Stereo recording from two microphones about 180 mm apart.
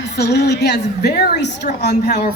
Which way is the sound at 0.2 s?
65° left (ahead or behind).